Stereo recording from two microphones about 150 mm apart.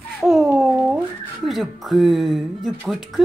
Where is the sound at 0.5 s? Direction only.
5° right (ahead or behind).